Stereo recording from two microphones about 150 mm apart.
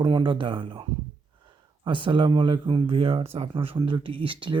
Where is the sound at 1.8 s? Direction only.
35° right (ahead or behind).